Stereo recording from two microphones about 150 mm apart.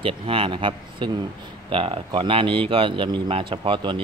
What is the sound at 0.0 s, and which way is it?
A man's voice, 35° right (ahead or behind).